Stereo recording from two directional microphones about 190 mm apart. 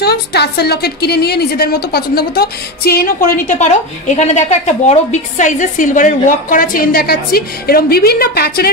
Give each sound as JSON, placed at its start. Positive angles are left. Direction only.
{"t": 0.0, "sound": "a woman's voice", "side_deg": 60}